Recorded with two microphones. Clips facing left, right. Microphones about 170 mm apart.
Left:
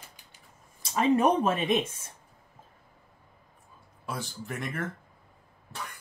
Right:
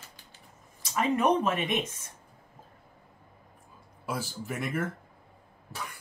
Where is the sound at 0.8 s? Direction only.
30° left (ahead or behind).